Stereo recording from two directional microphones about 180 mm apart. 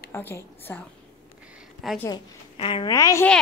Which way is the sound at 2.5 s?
30° left (ahead or behind).